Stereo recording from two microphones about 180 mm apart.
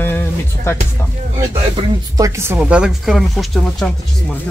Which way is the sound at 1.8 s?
30° right (ahead or behind).